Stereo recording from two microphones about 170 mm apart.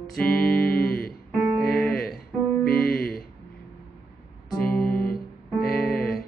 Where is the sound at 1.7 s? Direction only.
5° left (ahead or behind).